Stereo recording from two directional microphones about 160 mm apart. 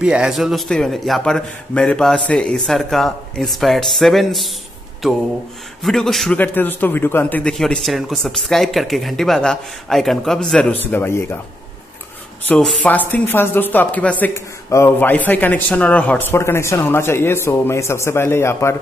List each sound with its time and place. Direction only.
0.0 s a man's voice: 5° right (ahead or behind)
5.8 s a man's voice: centre (ahead or behind)
10.9 s a man's voice: 15° left (ahead or behind)
12.4 s a man's voice: 5° left (ahead or behind)